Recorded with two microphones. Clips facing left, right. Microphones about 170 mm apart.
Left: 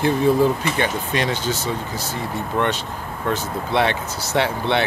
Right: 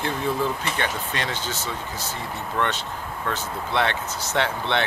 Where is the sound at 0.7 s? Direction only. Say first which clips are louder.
Left 5 dB; 15° left (ahead or behind).